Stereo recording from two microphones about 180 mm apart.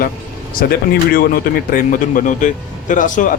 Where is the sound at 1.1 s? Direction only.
55° left (ahead or behind).